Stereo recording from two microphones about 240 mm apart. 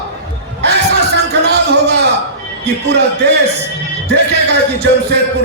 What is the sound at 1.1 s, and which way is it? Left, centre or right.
Music, right.